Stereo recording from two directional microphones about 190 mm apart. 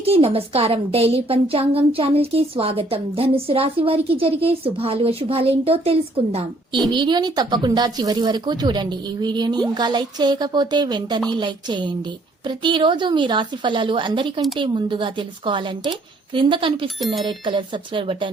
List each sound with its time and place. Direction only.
0.0 s a woman's voice: 30° right (ahead or behind)